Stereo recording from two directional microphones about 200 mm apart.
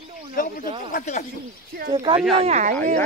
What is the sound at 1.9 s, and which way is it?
Speech, 25° right (ahead or behind).